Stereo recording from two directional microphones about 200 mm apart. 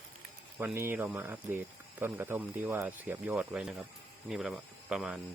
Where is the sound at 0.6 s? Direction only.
10° right (ahead or behind).